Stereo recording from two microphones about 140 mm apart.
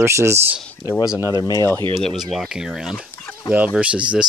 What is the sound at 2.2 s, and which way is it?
Speech, centre (ahead or behind).